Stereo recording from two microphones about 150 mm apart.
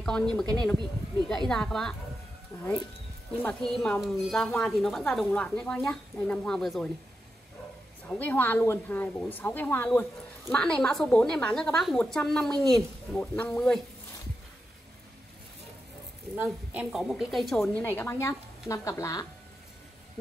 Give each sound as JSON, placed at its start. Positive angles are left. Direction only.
{"t": 0.0, "sound": "a woman's voice", "side_deg": 5}
{"t": 3.4, "sound": "a woman's voice", "side_deg": 5}
{"t": 8.1, "sound": "a woman's voice", "side_deg": 10}
{"t": 16.4, "sound": "a woman's voice", "side_deg": 0}
{"t": 17.8, "sound": "speech", "side_deg": 15}